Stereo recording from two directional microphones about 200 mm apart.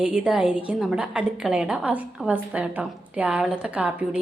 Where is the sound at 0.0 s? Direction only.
5° right (ahead or behind).